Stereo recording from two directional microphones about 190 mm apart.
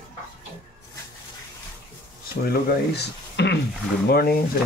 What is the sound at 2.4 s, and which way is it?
Speech, 60° left (ahead or behind).